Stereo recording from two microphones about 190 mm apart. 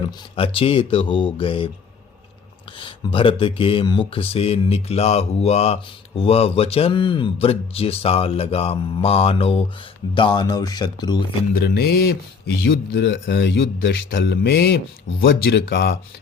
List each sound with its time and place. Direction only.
0.3 s speech: 30° left (ahead or behind)
2.7 s speech: 25° left (ahead or behind)
11.5 s speech: 55° left (ahead or behind)